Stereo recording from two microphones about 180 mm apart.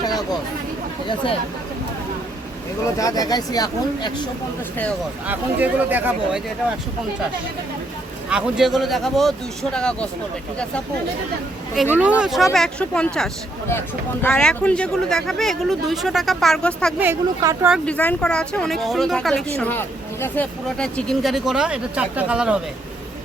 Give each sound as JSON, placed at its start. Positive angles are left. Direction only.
{"t": 3.0, "sound": "speech", "side_deg": 20}
{"t": 5.2, "sound": "speech", "side_deg": -10}
{"t": 8.3, "sound": "speech", "side_deg": -5}
{"t": 11.9, "sound": "speech", "side_deg": -5}
{"t": 17.0, "sound": "speech", "side_deg": -15}
{"t": 17.8, "sound": "speech", "side_deg": 5}